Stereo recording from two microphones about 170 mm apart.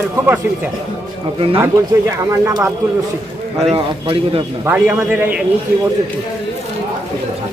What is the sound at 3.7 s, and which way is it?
Speech, 30° right (ahead or behind).